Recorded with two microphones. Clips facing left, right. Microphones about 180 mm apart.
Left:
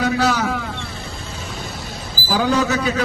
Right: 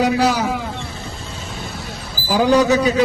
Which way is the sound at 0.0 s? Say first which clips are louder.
Right 2 dB; 10° right (ahead or behind).